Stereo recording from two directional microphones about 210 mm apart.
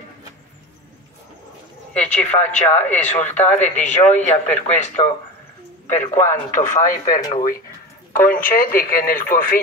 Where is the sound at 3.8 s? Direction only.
35° left (ahead or behind).